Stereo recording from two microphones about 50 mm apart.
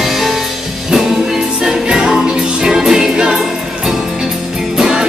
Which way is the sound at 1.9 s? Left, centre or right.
Centre.